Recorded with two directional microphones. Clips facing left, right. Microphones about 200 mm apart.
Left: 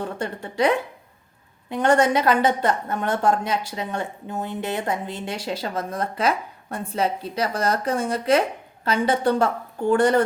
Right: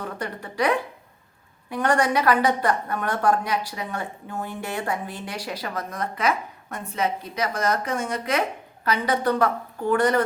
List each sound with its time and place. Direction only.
0.0 s a woman's voice: 25° left (ahead or behind)